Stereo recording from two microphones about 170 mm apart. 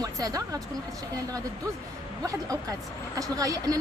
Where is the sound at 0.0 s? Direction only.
20° right (ahead or behind).